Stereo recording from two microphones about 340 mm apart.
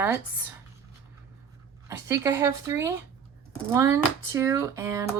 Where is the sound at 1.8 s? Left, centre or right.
Centre.